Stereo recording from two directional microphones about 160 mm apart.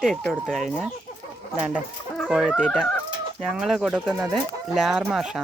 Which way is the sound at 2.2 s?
5° right (ahead or behind).